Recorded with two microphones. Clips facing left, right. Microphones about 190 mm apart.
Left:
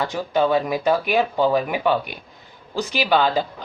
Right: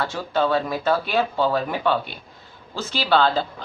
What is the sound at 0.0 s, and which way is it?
Speech, 15° left (ahead or behind).